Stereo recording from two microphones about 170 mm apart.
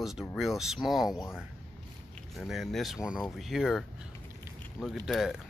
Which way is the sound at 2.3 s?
Centre (ahead or behind).